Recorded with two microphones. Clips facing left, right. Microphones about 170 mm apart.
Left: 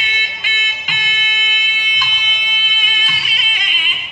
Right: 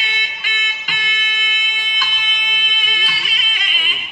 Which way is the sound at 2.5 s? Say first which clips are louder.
Even; 45° right (ahead or behind).